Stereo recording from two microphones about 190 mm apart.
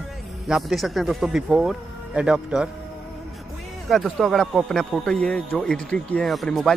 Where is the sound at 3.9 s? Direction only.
Centre (ahead or behind).